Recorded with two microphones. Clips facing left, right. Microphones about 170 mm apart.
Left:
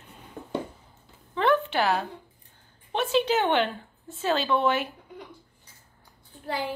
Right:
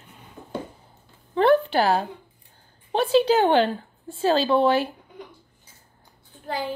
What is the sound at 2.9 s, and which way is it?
A woman's voice, 35° right (ahead or behind).